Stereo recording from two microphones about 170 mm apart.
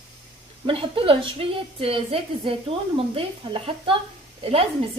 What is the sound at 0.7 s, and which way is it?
A woman's voice, 30° right (ahead or behind).